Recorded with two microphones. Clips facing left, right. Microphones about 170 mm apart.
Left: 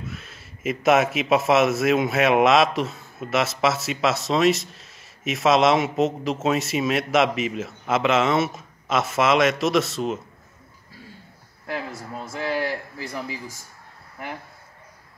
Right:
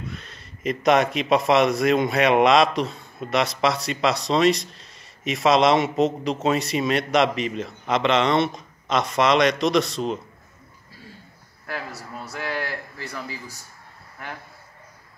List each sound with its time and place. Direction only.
0.1 s a man's voice: 5° left (ahead or behind)
12.3 s speech: 25° left (ahead or behind)